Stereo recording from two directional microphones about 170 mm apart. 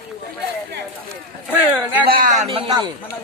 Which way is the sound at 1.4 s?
10° right (ahead or behind).